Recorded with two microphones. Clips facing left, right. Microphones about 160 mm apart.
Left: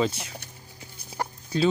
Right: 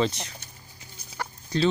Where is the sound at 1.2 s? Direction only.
40° left (ahead or behind).